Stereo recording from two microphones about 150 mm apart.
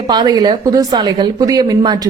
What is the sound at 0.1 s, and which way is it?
A woman's voice, 30° right (ahead or behind).